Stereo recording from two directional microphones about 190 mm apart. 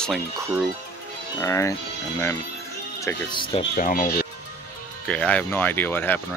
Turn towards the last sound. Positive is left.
turn(degrees=10)  # may be behind; listen again after turning